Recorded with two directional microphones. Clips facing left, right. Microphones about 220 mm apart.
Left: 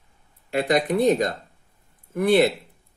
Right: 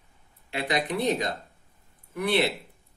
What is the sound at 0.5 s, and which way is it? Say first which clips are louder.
Speech: left 7 dB; 45° left (ahead or behind).